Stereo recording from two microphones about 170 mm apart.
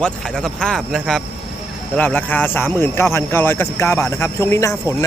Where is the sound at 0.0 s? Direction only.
5° left (ahead or behind).